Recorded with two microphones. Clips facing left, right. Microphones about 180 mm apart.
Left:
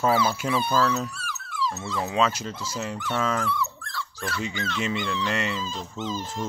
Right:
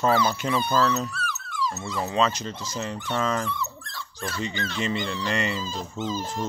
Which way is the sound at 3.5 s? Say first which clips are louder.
Left 3 dB; 20° right (ahead or behind).